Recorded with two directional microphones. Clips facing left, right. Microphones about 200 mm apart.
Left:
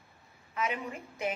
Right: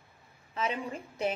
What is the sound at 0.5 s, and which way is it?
Speech, 30° right (ahead or behind).